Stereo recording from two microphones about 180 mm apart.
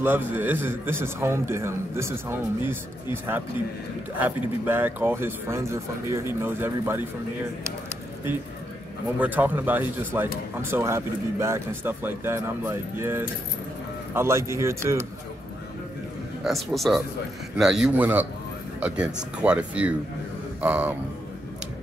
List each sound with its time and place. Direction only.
0.0 s speech: 10° right (ahead or behind)
9.2 s speech: 10° right (ahead or behind)
16.4 s a man's voice: centre (ahead or behind)